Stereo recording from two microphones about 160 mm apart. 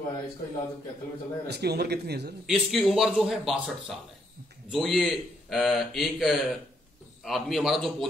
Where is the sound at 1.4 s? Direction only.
90° right.